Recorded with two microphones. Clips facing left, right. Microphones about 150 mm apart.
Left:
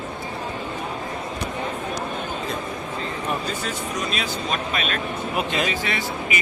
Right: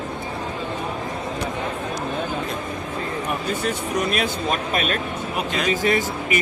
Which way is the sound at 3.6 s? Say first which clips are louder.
Right 4 dB; 60° right (ahead or behind).